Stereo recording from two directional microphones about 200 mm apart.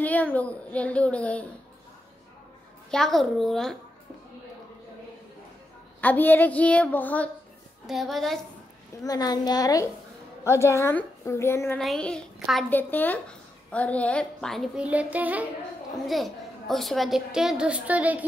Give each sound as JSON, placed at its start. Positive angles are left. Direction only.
{"t": 0.0, "sound": "a woman's voice", "side_deg": 10}
{"t": 2.9, "sound": "a child's voice", "side_deg": 0}
{"t": 5.9, "sound": "a woman's voice", "side_deg": 10}
{"t": 9.0, "sound": "a woman's voice", "side_deg": 20}